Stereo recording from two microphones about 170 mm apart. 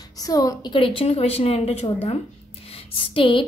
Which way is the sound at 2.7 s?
30° left (ahead or behind).